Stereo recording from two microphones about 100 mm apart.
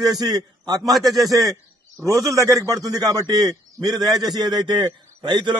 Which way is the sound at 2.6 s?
35° right (ahead or behind).